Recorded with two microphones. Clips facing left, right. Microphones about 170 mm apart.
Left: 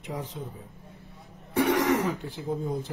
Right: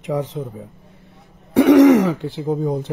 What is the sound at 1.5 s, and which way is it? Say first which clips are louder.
Throat clearing: right 14 dB; 90° right.